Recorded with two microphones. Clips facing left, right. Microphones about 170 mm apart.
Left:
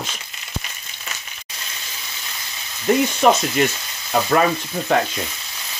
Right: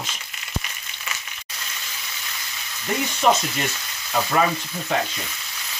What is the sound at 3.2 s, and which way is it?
Frying, 60° left (ahead or behind).